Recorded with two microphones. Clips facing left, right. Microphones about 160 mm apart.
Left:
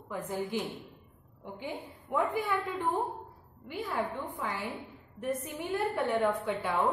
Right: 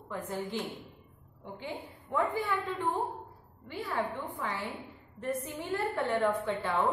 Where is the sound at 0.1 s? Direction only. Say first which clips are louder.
Left 2 dB; 15° left (ahead or behind).